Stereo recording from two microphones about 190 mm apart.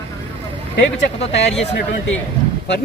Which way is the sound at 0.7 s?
65° left (ahead or behind).